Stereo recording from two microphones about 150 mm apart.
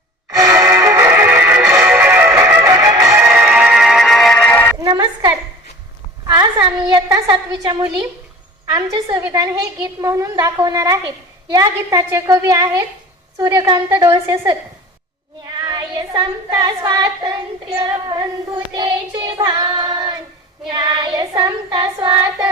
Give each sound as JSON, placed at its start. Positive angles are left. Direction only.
{"t": 0.3, "sound": "music", "side_deg": -20}
{"t": 4.8, "sound": "a sound", "side_deg": -25}
{"t": 6.2, "sound": "a woman's voice", "side_deg": -25}
{"t": 15.4, "sound": "child singing", "side_deg": -25}